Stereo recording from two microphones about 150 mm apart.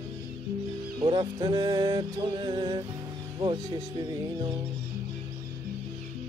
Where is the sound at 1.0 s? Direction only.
30° right (ahead or behind).